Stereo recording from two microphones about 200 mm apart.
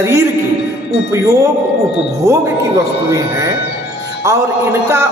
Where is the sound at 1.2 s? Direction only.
15° right (ahead or behind).